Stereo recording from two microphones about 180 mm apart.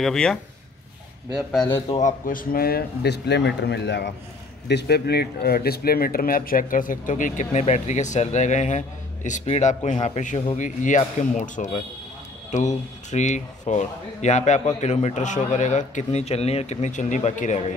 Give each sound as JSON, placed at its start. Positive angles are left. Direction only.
{"t": 0.0, "sound": "speech", "side_deg": 5}
{"t": 1.6, "sound": "a man's voice", "side_deg": 20}
{"t": 2.0, "sound": "a man's voice", "side_deg": 45}